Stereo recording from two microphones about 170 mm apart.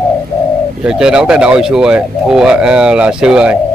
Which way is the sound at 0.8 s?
5° right (ahead or behind).